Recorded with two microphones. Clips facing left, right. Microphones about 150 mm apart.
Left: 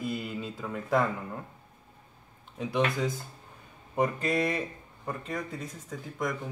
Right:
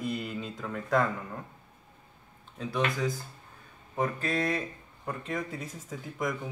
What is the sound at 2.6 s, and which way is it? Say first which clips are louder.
Speech: left 2 dB; 20° left (ahead or behind).